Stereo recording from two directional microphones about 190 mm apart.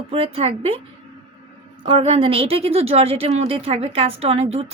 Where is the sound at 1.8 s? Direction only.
30° right (ahead or behind).